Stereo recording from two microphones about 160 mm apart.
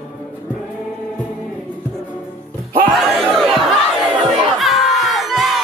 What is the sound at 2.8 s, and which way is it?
Battle cry, centre (ahead or behind).